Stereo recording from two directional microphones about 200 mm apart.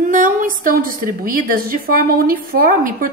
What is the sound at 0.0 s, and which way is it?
A woman's voice, 40° right (ahead or behind).